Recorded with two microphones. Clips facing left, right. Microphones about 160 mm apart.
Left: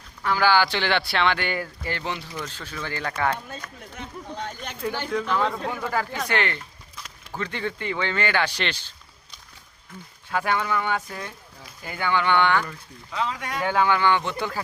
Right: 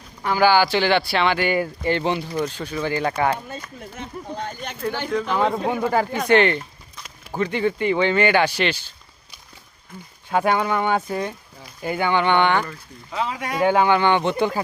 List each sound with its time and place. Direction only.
0.2 s speech: 15° right (ahead or behind)
3.3 s speech: 5° right (ahead or behind)
5.0 s speech: 10° right (ahead or behind)
6.9 s a sound: 5° right (ahead or behind)
7.3 s speech: 15° right (ahead or behind)
10.2 s speech: 25° right (ahead or behind)
13.1 s speech: 10° right (ahead or behind)